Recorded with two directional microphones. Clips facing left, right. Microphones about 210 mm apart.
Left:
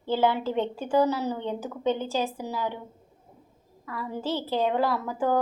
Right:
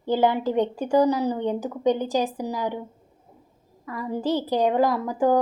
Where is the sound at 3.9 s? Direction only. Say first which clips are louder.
Right 5 dB; 15° right (ahead or behind).